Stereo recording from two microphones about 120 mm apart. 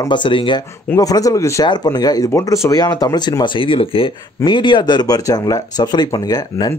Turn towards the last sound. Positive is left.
turn(degrees=30)  # may be behind; listen again after turning